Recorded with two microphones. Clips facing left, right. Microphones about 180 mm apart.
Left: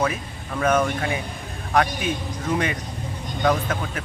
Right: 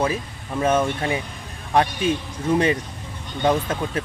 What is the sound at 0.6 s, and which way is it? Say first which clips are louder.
Speech: right 1 dB; 25° right (ahead or behind).